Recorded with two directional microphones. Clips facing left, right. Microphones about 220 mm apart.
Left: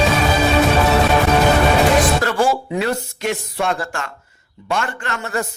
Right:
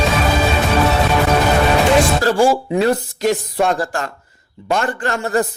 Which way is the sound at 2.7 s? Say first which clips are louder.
Right 5 dB; 35° right (ahead or behind).